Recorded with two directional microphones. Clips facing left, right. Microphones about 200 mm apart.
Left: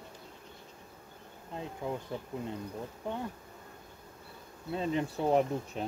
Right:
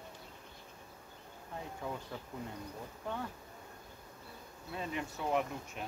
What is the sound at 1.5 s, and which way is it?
Speech, 20° left (ahead or behind).